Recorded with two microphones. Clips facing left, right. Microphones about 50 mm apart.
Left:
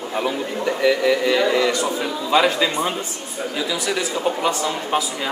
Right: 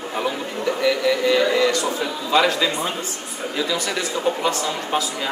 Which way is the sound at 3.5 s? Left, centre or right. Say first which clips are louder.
Even; centre.